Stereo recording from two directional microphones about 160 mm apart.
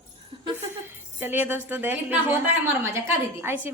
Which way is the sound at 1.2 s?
10° right (ahead or behind).